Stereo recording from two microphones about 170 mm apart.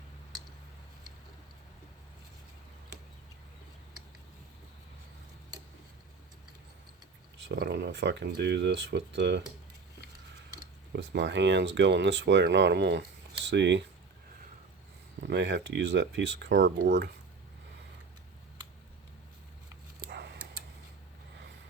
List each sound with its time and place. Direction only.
7.3 s speech: 90° right
10.9 s speech: 85° right
15.2 s speech: 90° right
20.1 s a sound: 75° right (ahead or behind)